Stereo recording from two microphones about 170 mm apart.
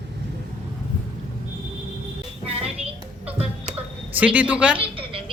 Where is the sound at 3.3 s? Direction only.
35° right (ahead or behind).